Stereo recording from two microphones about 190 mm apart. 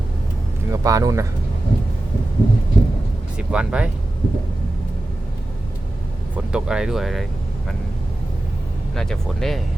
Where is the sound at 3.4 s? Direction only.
5° right (ahead or behind).